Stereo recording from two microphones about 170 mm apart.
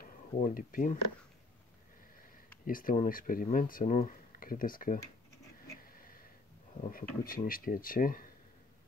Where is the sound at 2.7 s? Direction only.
55° left (ahead or behind).